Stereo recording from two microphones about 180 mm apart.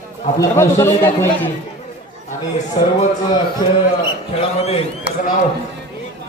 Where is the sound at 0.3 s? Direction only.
15° left (ahead or behind).